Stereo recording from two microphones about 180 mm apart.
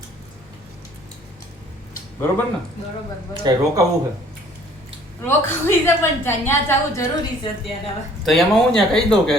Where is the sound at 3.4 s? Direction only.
25° right (ahead or behind).